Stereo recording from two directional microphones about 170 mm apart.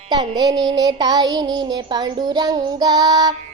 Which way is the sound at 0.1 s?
25° right (ahead or behind).